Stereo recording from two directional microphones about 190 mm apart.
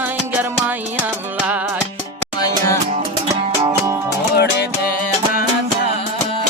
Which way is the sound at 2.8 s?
35° right (ahead or behind).